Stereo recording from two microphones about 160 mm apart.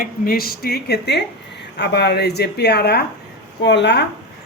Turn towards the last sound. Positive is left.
turn(degrees=90)